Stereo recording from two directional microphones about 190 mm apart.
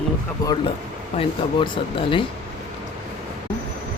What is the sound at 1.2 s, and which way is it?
Speech, 30° left (ahead or behind).